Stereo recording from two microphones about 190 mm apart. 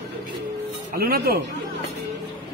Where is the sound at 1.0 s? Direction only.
50° right (ahead or behind).